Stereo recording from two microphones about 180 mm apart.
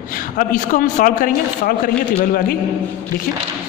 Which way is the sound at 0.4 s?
50° left (ahead or behind).